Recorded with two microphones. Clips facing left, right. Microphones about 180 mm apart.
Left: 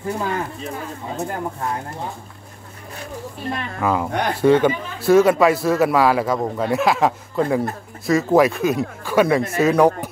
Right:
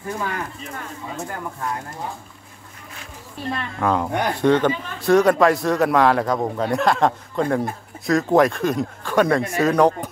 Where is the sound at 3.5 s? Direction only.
5° left (ahead or behind).